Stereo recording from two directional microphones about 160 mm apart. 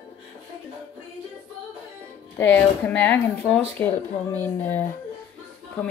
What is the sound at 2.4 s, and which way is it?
Speech, 10° left (ahead or behind).